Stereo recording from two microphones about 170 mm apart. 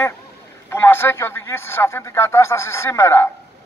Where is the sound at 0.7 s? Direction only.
15° left (ahead or behind).